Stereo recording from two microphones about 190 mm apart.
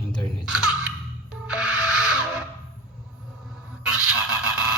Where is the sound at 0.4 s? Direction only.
5° right (ahead or behind).